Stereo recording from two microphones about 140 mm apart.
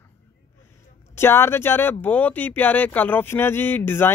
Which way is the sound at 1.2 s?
15° left (ahead or behind).